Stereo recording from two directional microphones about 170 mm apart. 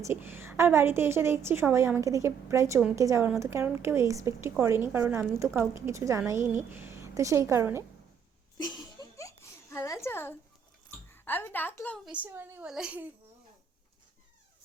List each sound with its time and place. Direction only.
0.0 s a woman's voice: 15° right (ahead or behind)
8.5 s a sound: 25° left (ahead or behind)
11.1 s a woman's voice: 10° left (ahead or behind)
12.0 s a woman's voice: 10° right (ahead or behind)